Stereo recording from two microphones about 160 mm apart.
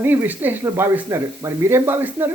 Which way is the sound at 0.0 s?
15° right (ahead or behind).